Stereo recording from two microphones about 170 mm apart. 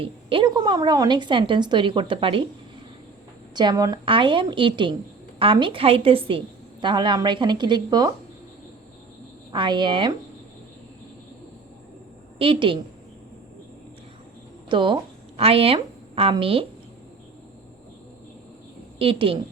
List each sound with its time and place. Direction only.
0.0 s a woman's voice: 30° right (ahead or behind)
3.5 s a woman's voice: 25° right (ahead or behind)
9.5 s a woman's voice: 30° right (ahead or behind)
12.4 s a woman's voice: 30° right (ahead or behind)
14.7 s a woman's voice: 30° right (ahead or behind)
18.9 s a woman's voice: 35° right (ahead or behind)